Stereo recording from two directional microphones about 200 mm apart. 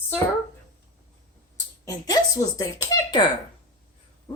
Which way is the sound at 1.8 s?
20° left (ahead or behind).